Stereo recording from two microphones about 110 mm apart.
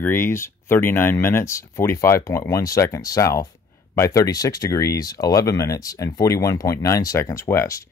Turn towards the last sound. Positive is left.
turn(degrees=30)  # may be behind; listen again after turning